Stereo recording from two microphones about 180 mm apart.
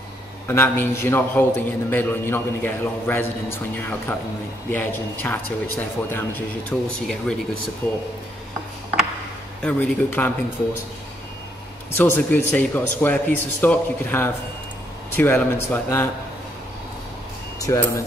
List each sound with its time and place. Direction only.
0.5 s a man's voice: 15° left (ahead or behind)
9.6 s a man's voice: 10° left (ahead or behind)
11.9 s a man's voice: 10° left (ahead or behind)
17.6 s speech: 15° left (ahead or behind)